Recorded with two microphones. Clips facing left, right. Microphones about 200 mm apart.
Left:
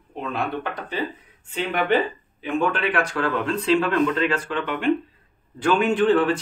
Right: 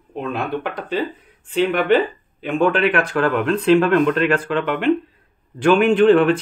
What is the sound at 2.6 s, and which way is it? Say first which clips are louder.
Speech: right 7 dB; 60° right (ahead or behind).